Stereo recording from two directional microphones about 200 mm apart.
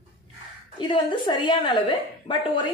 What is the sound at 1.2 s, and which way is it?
A woman's voice, 20° left (ahead or behind).